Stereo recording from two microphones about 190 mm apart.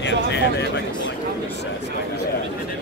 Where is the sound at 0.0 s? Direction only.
65° left (ahead or behind).